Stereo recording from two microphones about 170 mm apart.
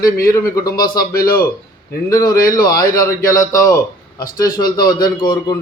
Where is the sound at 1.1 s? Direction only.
60° left (ahead or behind).